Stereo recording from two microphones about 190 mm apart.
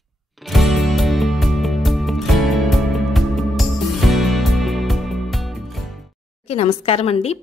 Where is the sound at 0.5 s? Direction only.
Centre (ahead or behind).